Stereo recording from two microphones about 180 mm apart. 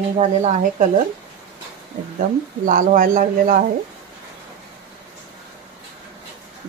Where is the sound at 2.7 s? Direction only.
50° right (ahead or behind).